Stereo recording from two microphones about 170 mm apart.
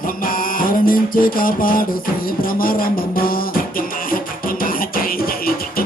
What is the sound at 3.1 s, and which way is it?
Music, 60° left (ahead or behind).